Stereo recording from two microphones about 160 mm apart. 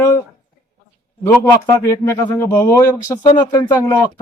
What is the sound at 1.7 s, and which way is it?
A man's voice, 15° left (ahead or behind).